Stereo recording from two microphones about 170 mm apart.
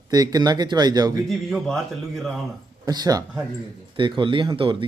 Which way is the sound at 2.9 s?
20° right (ahead or behind).